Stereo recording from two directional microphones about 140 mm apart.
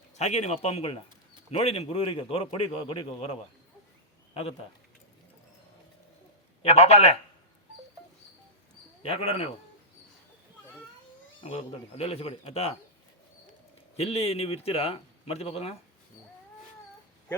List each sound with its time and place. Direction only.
0.2 s a man's voice: 50° left (ahead or behind)
6.6 s a man's voice: 50° left (ahead or behind)
9.0 s a man's voice: 45° left (ahead or behind)
11.4 s a man's voice: 45° left (ahead or behind)
13.9 s a man's voice: 45° left (ahead or behind)